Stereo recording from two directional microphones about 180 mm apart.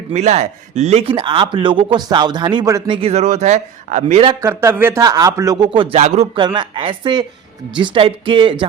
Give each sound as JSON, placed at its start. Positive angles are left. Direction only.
{"t": 0.1, "sound": "speech", "side_deg": -40}
{"t": 4.4, "sound": "a man's voice", "side_deg": -15}